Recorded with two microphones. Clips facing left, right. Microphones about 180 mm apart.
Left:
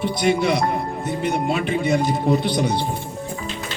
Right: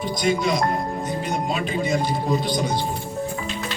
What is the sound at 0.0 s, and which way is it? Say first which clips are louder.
Speech: left 3 dB; 70° left (ahead or behind).